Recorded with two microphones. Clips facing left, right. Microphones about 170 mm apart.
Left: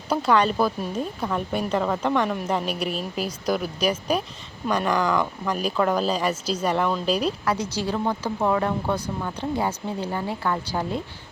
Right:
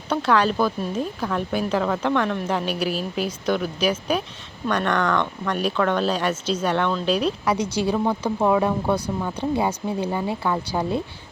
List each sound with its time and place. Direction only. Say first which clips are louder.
0.1 s speech: even; centre (ahead or behind)
7.4 s speech: right 3 dB; 20° right (ahead or behind)